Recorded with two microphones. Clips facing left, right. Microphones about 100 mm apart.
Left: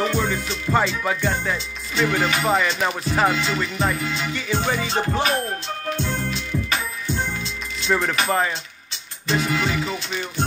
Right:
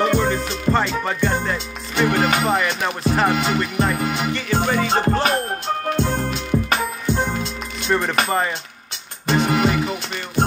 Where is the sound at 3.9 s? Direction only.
50° right (ahead or behind).